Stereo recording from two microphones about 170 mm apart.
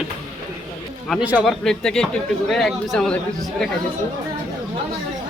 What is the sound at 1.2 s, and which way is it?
Speech, 5° right (ahead or behind).